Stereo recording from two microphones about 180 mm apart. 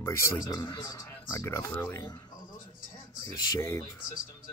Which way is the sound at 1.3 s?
15° left (ahead or behind).